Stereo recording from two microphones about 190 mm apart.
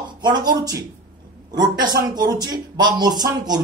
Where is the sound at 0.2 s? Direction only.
20° right (ahead or behind).